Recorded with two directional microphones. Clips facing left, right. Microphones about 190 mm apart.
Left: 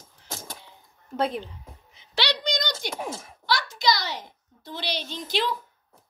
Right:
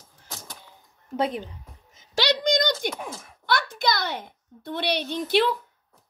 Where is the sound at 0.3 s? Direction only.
50° left (ahead or behind).